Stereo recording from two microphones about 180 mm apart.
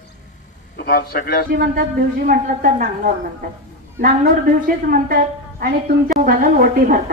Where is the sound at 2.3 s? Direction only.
50° right (ahead or behind).